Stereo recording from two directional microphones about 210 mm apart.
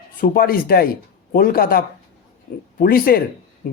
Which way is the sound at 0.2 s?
45° left (ahead or behind).